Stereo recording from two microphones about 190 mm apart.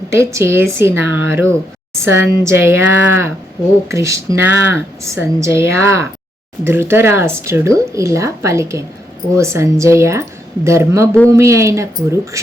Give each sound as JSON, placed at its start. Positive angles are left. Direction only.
{"t": 0.1, "sound": "speech", "side_deg": -15}